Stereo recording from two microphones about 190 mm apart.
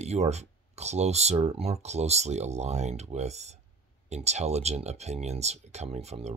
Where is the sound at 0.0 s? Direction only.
35° right (ahead or behind).